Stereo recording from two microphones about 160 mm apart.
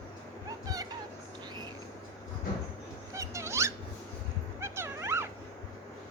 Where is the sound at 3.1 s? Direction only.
20° right (ahead or behind).